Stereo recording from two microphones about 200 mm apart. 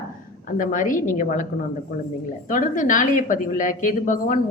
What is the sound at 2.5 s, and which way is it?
A woman's voice, 40° left (ahead or behind).